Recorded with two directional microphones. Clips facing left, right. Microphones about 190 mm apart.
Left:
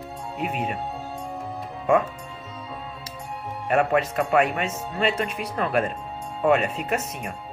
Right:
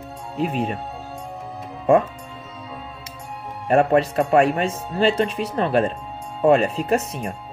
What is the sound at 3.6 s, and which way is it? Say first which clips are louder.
Speech: right 5 dB; 30° right (ahead or behind).